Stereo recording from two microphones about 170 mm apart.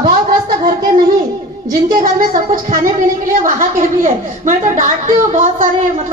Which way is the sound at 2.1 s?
55° right (ahead or behind).